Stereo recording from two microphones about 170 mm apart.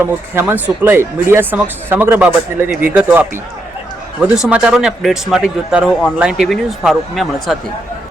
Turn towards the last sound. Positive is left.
turn(degrees=0)  # may be behind; listen again after turning